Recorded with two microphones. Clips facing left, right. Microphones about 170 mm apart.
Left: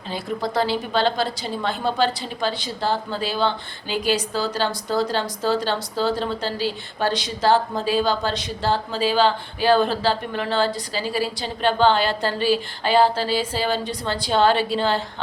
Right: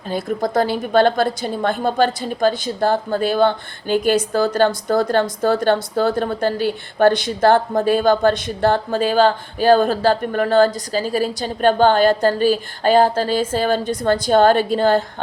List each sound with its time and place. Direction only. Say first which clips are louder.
0.1 s a woman's voice: right 5 dB; 50° right (ahead or behind)